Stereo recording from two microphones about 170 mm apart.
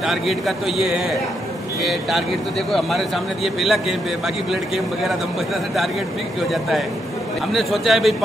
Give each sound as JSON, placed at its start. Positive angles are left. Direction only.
{"t": 0.0, "sound": "a man's voice", "side_deg": 0}
{"t": 3.4, "sound": "a man's voice", "side_deg": 0}
{"t": 7.5, "sound": "a man's voice", "side_deg": 0}